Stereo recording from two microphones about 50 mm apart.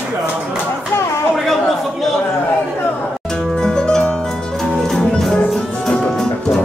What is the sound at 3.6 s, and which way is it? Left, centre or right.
Music, centre.